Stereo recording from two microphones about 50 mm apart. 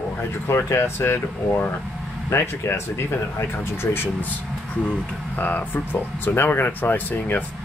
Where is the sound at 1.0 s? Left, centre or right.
Left.